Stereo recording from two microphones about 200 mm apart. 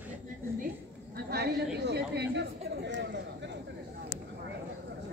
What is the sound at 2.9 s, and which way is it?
Clip-clop, 60° right (ahead or behind).